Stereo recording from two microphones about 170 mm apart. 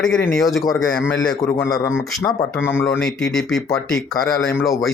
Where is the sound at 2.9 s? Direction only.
5° left (ahead or behind).